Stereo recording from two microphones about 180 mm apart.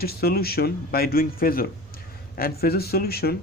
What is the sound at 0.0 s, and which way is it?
Speech, 60° left (ahead or behind).